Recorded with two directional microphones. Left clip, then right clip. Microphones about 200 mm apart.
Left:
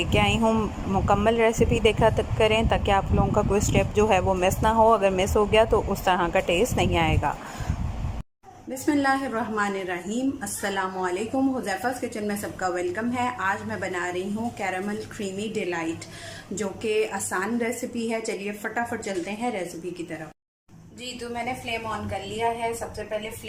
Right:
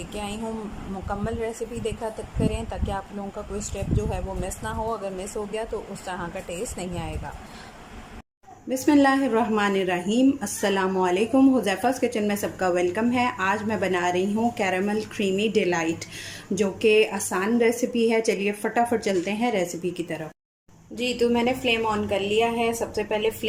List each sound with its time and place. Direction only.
0.1 s speech: 10° left (ahead or behind)
8.7 s a woman's voice: 15° right (ahead or behind)
21.0 s a woman's voice: 50° right (ahead or behind)